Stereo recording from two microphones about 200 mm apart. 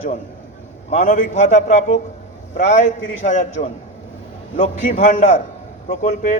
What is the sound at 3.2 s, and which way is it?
A man's voice, 35° left (ahead or behind).